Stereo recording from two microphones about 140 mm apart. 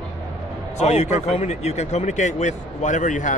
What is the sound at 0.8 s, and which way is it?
Speech, 50° left (ahead or behind).